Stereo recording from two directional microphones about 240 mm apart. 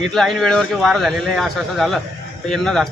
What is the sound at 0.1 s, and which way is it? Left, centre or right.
Speech, centre.